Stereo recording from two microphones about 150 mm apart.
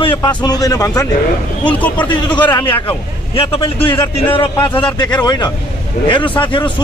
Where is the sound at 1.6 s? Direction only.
10° left (ahead or behind).